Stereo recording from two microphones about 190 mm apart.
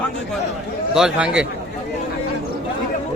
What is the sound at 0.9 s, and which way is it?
Speech, 5° right (ahead or behind).